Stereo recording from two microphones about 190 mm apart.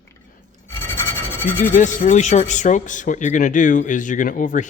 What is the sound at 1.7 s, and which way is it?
Speech, 40° left (ahead or behind).